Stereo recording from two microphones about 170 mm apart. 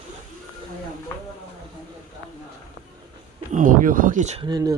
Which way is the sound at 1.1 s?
20° left (ahead or behind).